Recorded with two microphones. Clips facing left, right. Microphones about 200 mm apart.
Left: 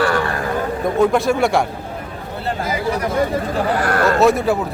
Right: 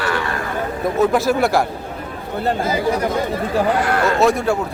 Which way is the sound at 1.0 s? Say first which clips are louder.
Even; centre (ahead or behind).